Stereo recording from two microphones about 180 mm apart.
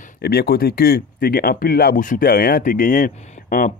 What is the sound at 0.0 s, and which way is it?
Speech, 60° left (ahead or behind).